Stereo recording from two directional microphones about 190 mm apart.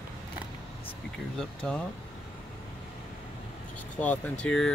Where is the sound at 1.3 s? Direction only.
5° left (ahead or behind).